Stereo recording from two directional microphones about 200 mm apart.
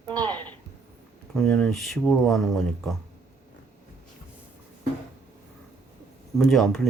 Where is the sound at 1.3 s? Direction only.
5° left (ahead or behind).